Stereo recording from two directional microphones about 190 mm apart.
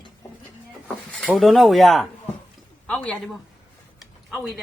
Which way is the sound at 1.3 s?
Centre (ahead or behind).